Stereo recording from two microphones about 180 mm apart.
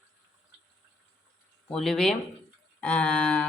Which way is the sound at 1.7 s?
Centre (ahead or behind).